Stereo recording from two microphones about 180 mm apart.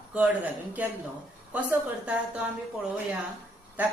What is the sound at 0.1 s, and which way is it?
Speech, 5° right (ahead or behind).